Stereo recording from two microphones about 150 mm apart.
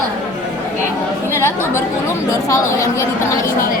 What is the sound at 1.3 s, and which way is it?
A woman's voice, 15° left (ahead or behind).